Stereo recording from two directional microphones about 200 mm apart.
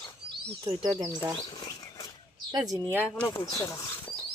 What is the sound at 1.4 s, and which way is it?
Dog, 20° left (ahead or behind).